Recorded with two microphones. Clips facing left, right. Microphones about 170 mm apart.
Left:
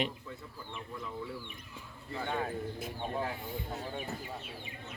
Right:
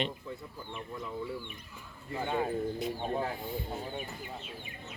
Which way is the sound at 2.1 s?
15° right (ahead or behind).